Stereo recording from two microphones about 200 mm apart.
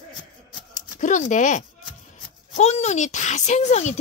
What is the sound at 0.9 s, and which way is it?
A woman's voice, 40° left (ahead or behind).